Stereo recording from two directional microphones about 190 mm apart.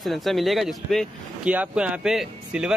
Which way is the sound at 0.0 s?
Centre (ahead or behind).